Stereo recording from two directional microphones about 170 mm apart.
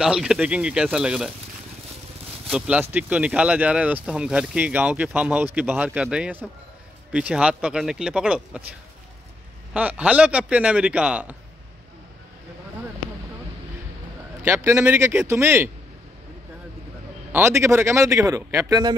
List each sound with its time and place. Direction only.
0.0 s speech: 5° right (ahead or behind)
2.5 s speech: 5° right (ahead or behind)
9.8 s speech: 10° right (ahead or behind)
14.4 s speech: 15° right (ahead or behind)
17.3 s speech: 15° right (ahead or behind)